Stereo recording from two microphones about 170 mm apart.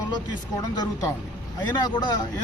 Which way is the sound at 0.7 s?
20° left (ahead or behind).